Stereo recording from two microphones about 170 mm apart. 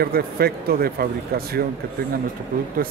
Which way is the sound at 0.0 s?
65° right (ahead or behind).